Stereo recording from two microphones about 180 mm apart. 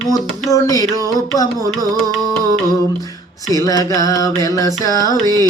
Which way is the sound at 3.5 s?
20° left (ahead or behind).